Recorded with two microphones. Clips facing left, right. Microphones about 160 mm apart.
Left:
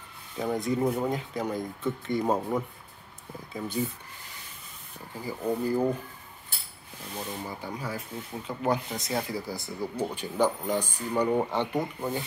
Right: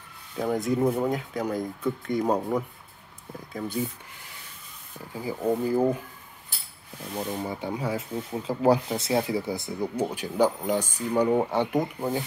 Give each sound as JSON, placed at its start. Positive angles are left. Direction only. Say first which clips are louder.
{"t": 0.4, "sound": "speech", "louder": "right 3 dB", "side_deg": 0}
{"t": 5.1, "sound": "speech", "louder": "right 4 dB", "side_deg": -15}
{"t": 7.2, "sound": "speech", "louder": "right 6 dB", "side_deg": -25}
{"t": 10.1, "sound": "speech", "louder": "right 2 dB", "side_deg": -10}